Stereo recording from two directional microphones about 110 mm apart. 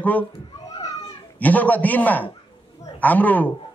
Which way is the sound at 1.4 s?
15° left (ahead or behind).